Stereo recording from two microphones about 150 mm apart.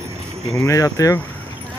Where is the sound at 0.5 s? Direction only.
20° left (ahead or behind).